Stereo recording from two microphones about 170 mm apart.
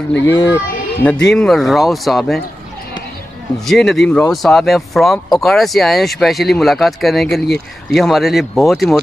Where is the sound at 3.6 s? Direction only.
Centre (ahead or behind).